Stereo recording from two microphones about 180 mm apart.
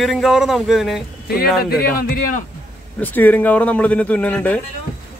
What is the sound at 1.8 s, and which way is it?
Speech, 55° left (ahead or behind).